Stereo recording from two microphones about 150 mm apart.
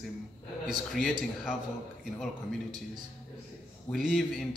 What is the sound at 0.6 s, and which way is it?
Speech, centre (ahead or behind).